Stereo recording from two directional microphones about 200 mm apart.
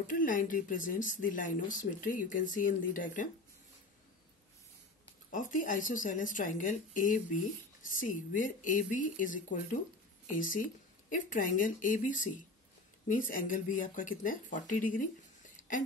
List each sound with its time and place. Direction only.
0.0 s speech: 40° left (ahead or behind)
5.3 s speech: 40° left (ahead or behind)